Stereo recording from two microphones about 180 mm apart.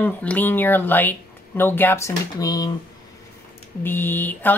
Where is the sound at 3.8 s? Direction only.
10° left (ahead or behind).